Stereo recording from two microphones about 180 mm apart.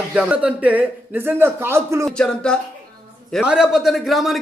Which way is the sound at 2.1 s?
5° left (ahead or behind).